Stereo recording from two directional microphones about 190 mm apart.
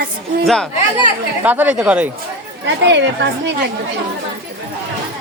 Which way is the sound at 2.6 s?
70° right (ahead or behind).